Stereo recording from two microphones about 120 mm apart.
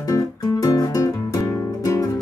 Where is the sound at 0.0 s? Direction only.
30° left (ahead or behind).